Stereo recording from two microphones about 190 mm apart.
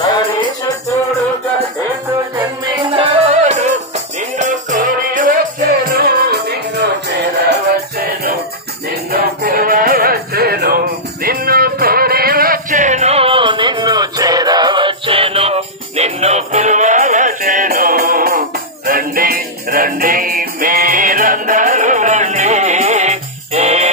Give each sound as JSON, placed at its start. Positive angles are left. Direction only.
{"t": 0.1, "sound": "music", "side_deg": 20}
{"t": 2.3, "sound": "music", "side_deg": -25}